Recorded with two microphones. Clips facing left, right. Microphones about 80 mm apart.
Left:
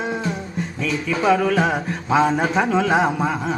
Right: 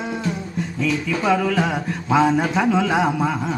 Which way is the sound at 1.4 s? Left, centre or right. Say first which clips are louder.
Left 2 dB; left.